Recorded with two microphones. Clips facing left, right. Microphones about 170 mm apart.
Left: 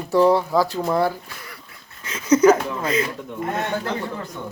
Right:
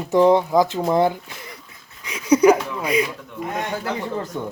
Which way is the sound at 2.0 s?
15° right (ahead or behind).